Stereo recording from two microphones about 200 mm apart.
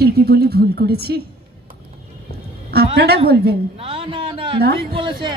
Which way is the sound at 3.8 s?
25° right (ahead or behind).